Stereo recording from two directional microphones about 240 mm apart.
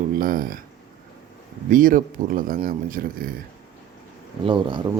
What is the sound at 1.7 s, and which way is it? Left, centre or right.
Speech, right.